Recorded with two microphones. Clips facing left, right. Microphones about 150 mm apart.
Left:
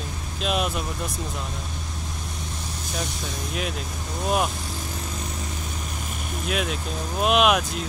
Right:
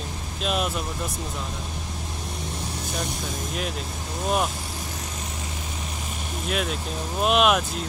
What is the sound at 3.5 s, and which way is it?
Speech, centre (ahead or behind).